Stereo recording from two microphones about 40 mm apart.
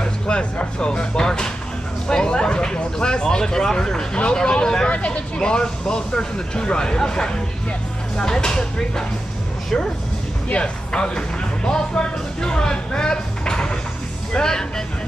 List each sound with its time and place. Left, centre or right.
0.3 s speech: left
10.5 s music: left
14.3 s speech: centre